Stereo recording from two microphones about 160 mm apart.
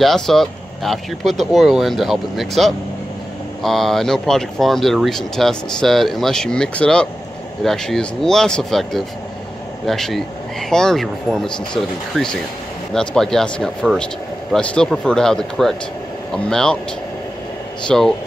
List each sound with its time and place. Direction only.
0.0 s speech: centre (ahead or behind)
17.8 s speech: centre (ahead or behind)